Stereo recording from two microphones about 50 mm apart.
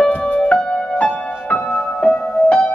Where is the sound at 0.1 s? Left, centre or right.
Left.